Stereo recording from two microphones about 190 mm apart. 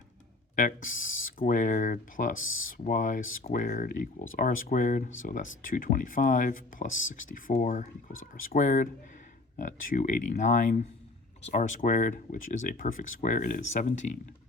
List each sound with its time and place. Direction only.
0.5 s speech: 40° left (ahead or behind)
2.4 s speech: 90° left
2.7 s speech: 45° left (ahead or behind)